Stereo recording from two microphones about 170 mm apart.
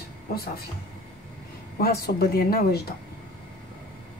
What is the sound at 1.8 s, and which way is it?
Speech, 65° left (ahead or behind).